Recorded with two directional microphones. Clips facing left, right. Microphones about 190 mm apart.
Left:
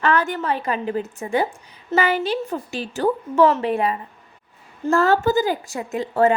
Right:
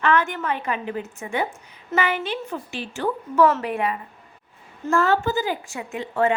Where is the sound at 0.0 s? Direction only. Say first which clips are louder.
Left 1 dB; 35° left (ahead or behind).